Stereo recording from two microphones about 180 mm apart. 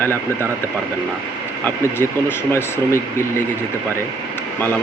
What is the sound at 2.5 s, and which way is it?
Speech, 15° left (ahead or behind).